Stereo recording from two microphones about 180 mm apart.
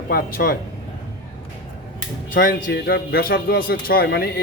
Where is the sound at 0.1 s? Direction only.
50° left (ahead or behind).